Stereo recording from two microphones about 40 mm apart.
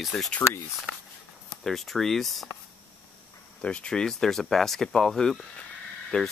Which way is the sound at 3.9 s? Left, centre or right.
Centre.